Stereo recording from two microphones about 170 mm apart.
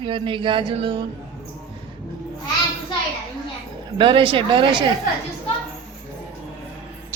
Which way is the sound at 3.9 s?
30° right (ahead or behind).